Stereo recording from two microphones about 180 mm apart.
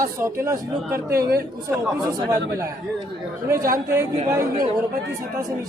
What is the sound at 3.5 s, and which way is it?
Speech, 20° right (ahead or behind).